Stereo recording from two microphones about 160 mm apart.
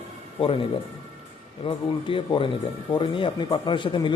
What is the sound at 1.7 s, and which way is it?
Speech, 35° left (ahead or behind).